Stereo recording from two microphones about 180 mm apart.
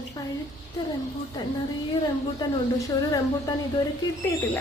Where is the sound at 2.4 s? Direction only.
20° left (ahead or behind).